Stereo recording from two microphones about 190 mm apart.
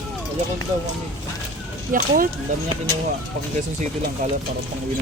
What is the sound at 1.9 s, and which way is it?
Speech, 45° right (ahead or behind).